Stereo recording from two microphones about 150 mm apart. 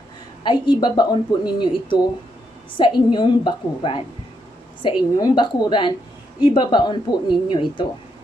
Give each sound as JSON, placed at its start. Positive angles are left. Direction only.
{"t": 0.4, "sound": "speech", "side_deg": 30}